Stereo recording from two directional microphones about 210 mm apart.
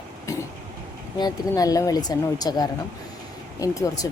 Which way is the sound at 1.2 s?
15° left (ahead or behind).